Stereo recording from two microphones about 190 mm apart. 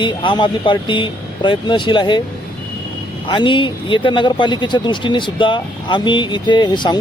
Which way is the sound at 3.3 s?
25° left (ahead or behind).